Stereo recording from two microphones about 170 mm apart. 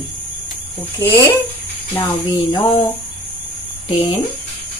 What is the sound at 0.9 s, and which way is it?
Speech, 15° left (ahead or behind).